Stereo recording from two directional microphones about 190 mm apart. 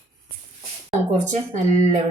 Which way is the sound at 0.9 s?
40° right (ahead or behind).